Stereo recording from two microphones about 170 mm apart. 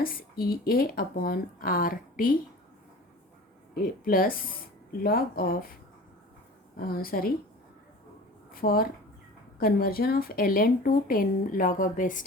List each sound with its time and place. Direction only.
0.0 s speech: 55° left (ahead or behind)
4.0 s speech: 60° left (ahead or behind)
6.7 s speech: 60° left (ahead or behind)
8.5 s speech: 60° left (ahead or behind)